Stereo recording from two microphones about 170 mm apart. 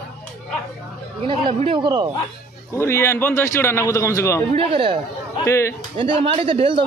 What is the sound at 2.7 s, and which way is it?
A man's voice, 15° left (ahead or behind).